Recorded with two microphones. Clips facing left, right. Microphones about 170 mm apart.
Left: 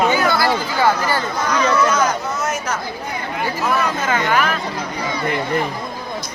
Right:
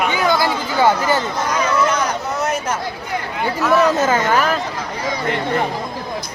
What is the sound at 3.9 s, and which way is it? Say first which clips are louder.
Speech: right 3 dB; 40° right (ahead or behind).